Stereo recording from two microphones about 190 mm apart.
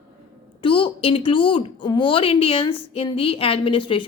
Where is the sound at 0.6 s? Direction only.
25° left (ahead or behind).